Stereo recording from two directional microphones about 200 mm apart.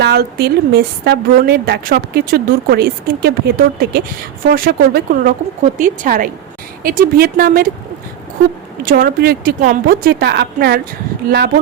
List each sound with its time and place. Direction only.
0.0 s a woman's voice: 50° right (ahead or behind)
8.8 s a woman's voice: 45° right (ahead or behind)